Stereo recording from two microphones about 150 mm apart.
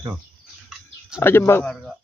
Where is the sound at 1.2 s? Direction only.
15° left (ahead or behind).